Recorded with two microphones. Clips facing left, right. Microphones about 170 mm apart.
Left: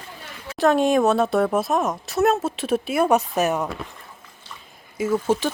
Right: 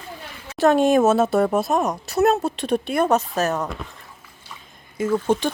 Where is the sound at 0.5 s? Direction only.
Centre (ahead or behind); by 3.6 s 15° left (ahead or behind).